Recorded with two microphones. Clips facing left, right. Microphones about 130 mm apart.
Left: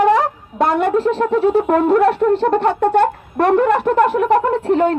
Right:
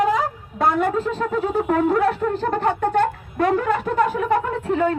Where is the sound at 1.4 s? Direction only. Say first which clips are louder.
Left 5 dB; 70° left (ahead or behind).